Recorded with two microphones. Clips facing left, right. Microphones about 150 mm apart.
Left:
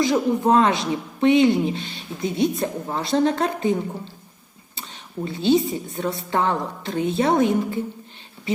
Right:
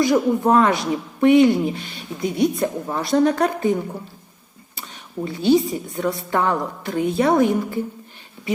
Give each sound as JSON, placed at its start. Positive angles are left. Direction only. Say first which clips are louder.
{"t": 0.0, "sound": "a woman's voice", "louder": "right 2 dB", "side_deg": 25}